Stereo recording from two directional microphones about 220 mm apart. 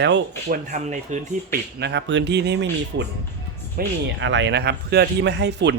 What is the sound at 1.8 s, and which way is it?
Speech, 55° right (ahead or behind).